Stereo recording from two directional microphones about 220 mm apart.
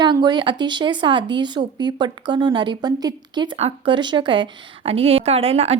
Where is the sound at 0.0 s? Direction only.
20° right (ahead or behind).